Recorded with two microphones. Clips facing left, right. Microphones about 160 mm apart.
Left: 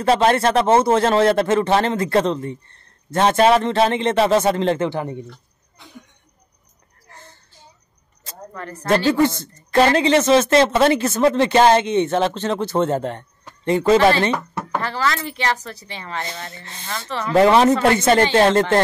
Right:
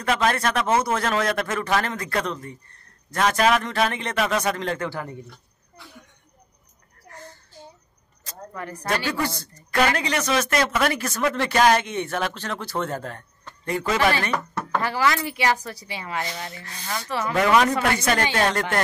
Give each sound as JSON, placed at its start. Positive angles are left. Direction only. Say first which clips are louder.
{"t": 0.0, "sound": "speech", "louder": "left 7 dB", "side_deg": 30}
{"t": 5.8, "sound": "a sound", "louder": "left 3 dB", "side_deg": 20}
{"t": 8.5, "sound": "a woman's voice", "louder": "left 1 dB", "side_deg": -10}
{"t": 9.0, "sound": "speech", "louder": "left 10 dB", "side_deg": 25}
{"t": 14.8, "sound": "a woman's voice", "louder": "even", "side_deg": -15}
{"t": 16.5, "sound": "speech", "louder": "left 1 dB", "side_deg": 25}